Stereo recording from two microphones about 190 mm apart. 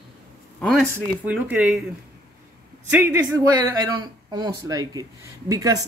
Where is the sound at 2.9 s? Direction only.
10° right (ahead or behind).